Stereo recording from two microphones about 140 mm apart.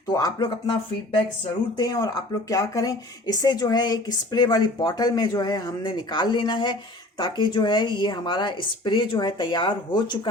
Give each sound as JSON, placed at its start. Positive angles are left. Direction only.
{"t": 0.1, "sound": "speech", "side_deg": 25}